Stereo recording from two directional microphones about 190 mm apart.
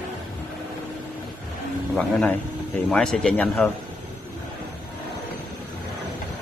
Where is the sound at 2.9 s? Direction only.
5° left (ahead or behind).